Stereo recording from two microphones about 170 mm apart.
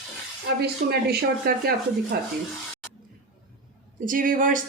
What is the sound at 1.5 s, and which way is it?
Speech, 65° right (ahead or behind).